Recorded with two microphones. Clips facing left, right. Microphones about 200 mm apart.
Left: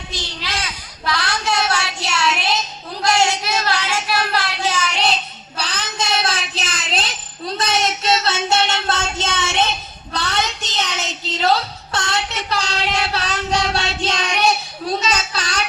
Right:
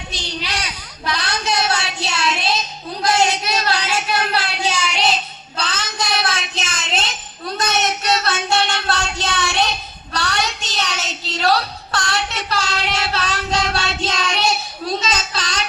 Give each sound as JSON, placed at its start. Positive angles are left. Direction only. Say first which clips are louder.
{"t": 0.1, "sound": "a sound", "louder": "right 1 dB", "side_deg": -15}
{"t": 3.0, "sound": "child singing", "louder": "even", "side_deg": -20}
{"t": 5.5, "sound": "child singing", "louder": "right 1 dB", "side_deg": 15}